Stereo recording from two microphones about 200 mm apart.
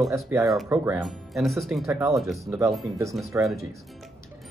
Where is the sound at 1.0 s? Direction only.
Centre (ahead or behind).